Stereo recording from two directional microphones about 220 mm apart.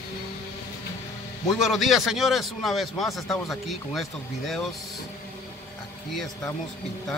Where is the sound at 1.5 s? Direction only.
Centre (ahead or behind).